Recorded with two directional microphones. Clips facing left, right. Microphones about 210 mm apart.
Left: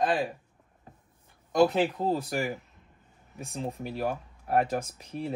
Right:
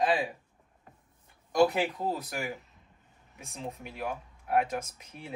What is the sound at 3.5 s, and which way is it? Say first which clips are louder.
Speech: left 6 dB; 35° left (ahead or behind).